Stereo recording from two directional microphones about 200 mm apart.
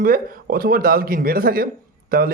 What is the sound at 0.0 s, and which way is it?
Speech, 45° right (ahead or behind).